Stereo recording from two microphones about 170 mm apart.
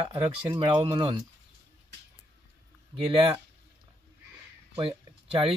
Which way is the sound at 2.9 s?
30° right (ahead or behind).